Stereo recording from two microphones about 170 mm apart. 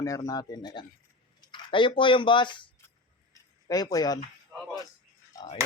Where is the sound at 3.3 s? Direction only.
20° left (ahead or behind).